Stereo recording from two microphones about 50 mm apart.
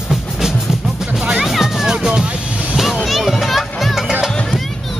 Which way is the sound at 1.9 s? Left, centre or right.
Centre.